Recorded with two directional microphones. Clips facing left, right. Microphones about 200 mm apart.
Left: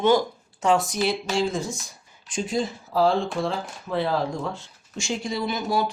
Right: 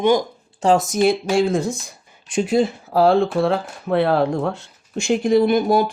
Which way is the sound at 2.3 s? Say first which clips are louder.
Right 8 dB; 65° right (ahead or behind).